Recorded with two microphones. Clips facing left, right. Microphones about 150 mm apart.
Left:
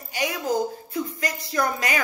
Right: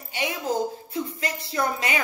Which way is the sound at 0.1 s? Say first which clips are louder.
Left 2 dB; 25° right (ahead or behind).